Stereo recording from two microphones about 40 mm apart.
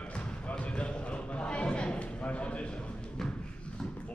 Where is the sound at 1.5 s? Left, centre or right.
Left.